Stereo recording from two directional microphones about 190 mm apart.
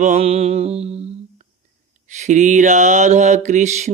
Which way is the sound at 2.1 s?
40° right (ahead or behind).